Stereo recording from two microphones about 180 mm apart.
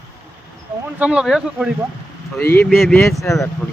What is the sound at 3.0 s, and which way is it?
Speech, 15° left (ahead or behind).